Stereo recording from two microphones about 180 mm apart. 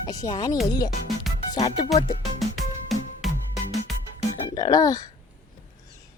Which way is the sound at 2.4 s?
Centre (ahead or behind).